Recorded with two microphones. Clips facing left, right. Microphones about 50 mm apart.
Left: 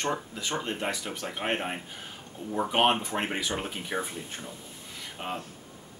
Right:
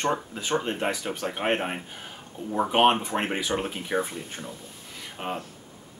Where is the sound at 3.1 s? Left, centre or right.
Centre.